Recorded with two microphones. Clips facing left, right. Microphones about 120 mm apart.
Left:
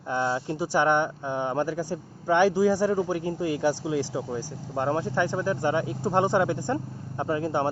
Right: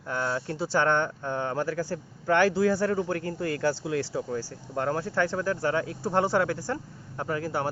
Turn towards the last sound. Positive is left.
turn(degrees=20)  # may be behind; listen again after turning